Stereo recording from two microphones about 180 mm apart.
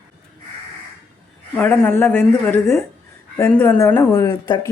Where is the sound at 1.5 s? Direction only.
10° left (ahead or behind).